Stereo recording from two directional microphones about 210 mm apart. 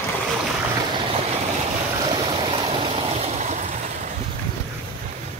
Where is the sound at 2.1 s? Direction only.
25° right (ahead or behind).